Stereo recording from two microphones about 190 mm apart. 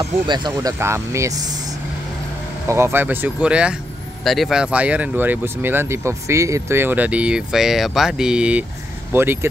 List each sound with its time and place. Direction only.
0.0 s speech: 25° right (ahead or behind)